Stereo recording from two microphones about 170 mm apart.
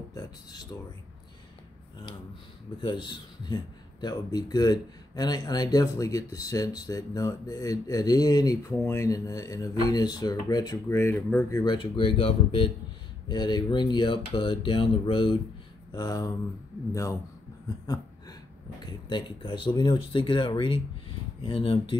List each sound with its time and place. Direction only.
0.1 s speech: 25° left (ahead or behind)
2.8 s a man's voice: 30° left (ahead or behind); by 11.6 s 15° left (ahead or behind)
11.6 s a man's voice: 30° left (ahead or behind)
18.9 s a man's voice: 30° left (ahead or behind)